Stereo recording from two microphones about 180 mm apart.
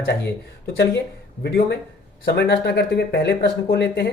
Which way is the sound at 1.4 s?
65° left (ahead or behind).